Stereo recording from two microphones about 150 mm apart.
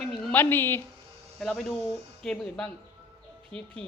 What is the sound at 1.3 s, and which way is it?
A woman's voice, 5° left (ahead or behind).